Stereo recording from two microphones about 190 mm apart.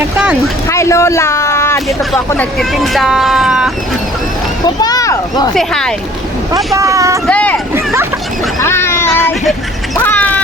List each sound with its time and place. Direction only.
0.7 s speech: 15° left (ahead or behind); by 3.7 s 5° right (ahead or behind)
4.6 s a child's voice: 20° left (ahead or behind)
5.5 s speech: 5° left (ahead or behind)
6.7 s speech: 15° right (ahead or behind)
7.3 s speech: 5° left (ahead or behind)
8.6 s a sound: 15° left (ahead or behind)
10.0 s quack: 10° left (ahead or behind)